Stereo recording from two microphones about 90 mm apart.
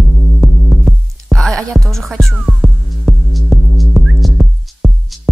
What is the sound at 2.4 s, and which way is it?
Music, 10° right (ahead or behind).